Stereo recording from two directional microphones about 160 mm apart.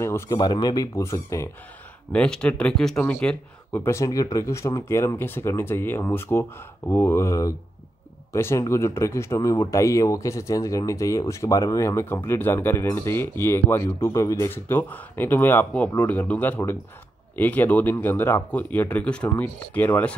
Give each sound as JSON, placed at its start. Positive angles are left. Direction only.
{"t": 0.0, "sound": "speech", "side_deg": 20}
{"t": 2.1, "sound": "speech", "side_deg": 5}